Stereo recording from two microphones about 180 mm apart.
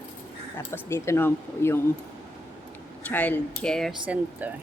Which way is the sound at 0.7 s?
15° left (ahead or behind).